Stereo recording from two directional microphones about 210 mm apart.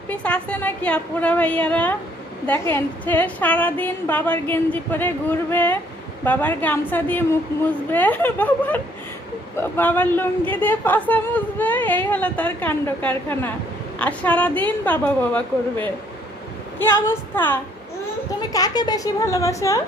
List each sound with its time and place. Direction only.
0.1 s a woman's voice: 5° left (ahead or behind)
16.7 s a woman's voice: 10° left (ahead or behind)